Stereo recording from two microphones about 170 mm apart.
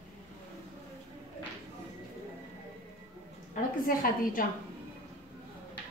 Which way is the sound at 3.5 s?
55° left (ahead or behind).